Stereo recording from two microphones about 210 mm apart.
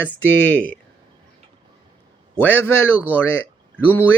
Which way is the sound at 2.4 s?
10° left (ahead or behind).